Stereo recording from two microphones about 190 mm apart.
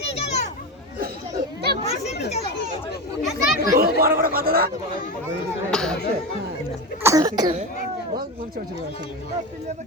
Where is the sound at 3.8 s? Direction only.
50° right (ahead or behind).